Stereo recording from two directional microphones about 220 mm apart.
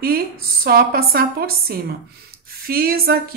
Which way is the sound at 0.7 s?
45° right (ahead or behind).